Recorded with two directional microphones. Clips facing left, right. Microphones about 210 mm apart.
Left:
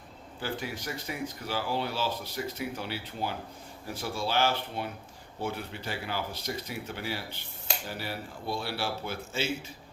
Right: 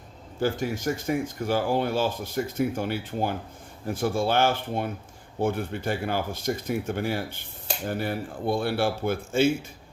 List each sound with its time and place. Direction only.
0.3 s speech: 45° right (ahead or behind)